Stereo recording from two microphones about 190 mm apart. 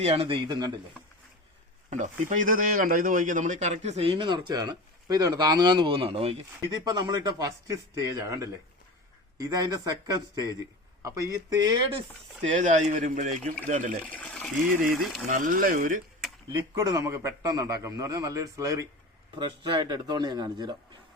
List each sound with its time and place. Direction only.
0.0 s speech: 30° right (ahead or behind)
1.9 s a man's voice: 40° right (ahead or behind)
12.5 s a man's voice: 40° right (ahead or behind)
14.0 s speech: 5° left (ahead or behind)
14.7 s speech: 45° right (ahead or behind)
16.5 s a man's voice: 20° right (ahead or behind)